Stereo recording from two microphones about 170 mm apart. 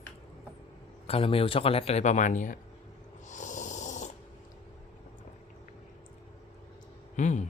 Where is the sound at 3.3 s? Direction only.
45° left (ahead or behind).